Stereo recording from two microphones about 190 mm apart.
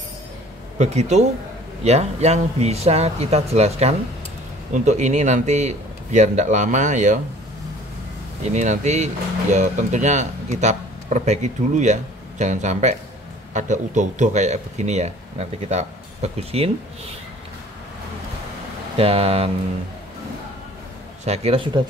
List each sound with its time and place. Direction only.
0.7 s speech: 35° right (ahead or behind)
8.5 s speech: 40° right (ahead or behind)
18.9 s speech: 30° right (ahead or behind)
21.2 s speech: 35° right (ahead or behind)